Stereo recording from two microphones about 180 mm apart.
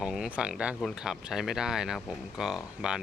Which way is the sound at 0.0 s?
5° right (ahead or behind).